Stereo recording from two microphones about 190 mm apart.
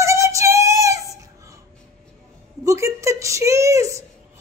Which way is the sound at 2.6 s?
15° right (ahead or behind).